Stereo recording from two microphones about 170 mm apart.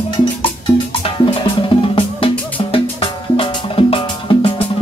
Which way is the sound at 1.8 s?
30° left (ahead or behind).